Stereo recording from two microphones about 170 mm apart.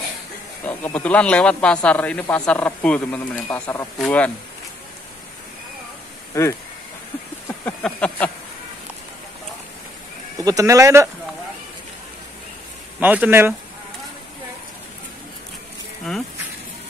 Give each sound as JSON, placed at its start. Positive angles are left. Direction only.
{"t": 0.7, "sound": "speech", "side_deg": 10}
{"t": 7.4, "sound": "a sound", "side_deg": 10}
{"t": 10.3, "sound": "speech", "side_deg": -20}
{"t": 13.0, "sound": "speech", "side_deg": -10}